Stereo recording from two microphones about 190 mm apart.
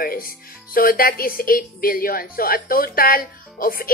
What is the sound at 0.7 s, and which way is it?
A woman's voice, 50° left (ahead or behind).